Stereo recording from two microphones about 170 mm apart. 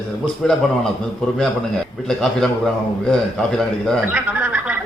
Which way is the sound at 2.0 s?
5° left (ahead or behind).